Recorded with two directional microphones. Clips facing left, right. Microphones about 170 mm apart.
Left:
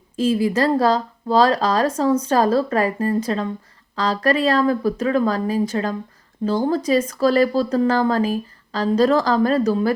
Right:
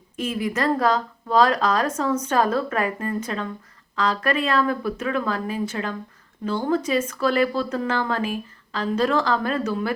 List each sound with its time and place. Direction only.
0.2 s speech: 30° left (ahead or behind)